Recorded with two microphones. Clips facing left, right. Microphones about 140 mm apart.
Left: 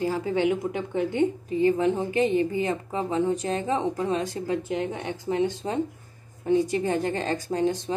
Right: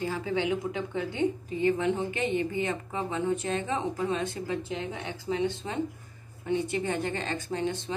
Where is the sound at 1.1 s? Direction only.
35° left (ahead or behind).